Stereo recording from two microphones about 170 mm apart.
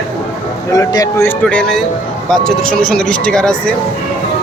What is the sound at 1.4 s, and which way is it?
Speech, 5° left (ahead or behind).